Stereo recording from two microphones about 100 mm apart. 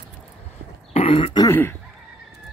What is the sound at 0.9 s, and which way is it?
Throat clearing, 75° left (ahead or behind).